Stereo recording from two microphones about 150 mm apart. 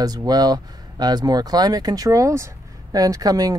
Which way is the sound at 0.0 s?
25° right (ahead or behind).